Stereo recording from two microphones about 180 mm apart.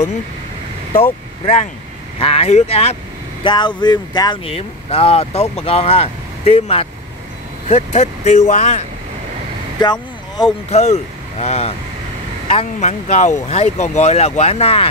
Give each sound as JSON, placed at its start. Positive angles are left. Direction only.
{"t": 2.1, "sound": "speech", "side_deg": 30}
{"t": 9.8, "sound": "vehicle", "side_deg": 25}
{"t": 10.7, "sound": "speech", "side_deg": 35}